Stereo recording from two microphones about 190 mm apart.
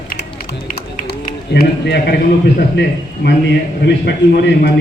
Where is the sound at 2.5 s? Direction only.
65° left (ahead or behind).